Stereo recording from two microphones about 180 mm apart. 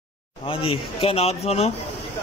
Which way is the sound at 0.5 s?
30° left (ahead or behind).